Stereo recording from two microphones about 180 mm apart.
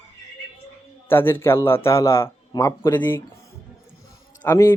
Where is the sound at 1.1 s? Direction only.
10° left (ahead or behind).